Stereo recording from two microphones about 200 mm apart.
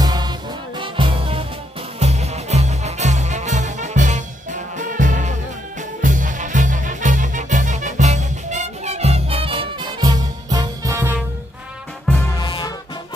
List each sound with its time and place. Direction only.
0.0 s music: 20° right (ahead or behind)
12.4 s music: 20° left (ahead or behind)